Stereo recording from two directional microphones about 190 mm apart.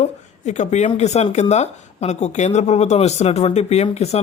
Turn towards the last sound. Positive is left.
turn(degrees=35)  # may be behind; listen again after turning